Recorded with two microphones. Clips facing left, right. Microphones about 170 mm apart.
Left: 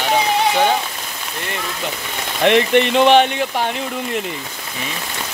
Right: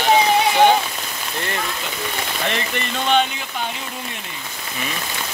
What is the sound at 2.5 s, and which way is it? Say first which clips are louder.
Speech: left 16 dB; 70° left (ahead or behind).